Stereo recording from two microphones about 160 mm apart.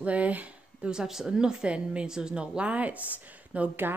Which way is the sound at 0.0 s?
10° right (ahead or behind).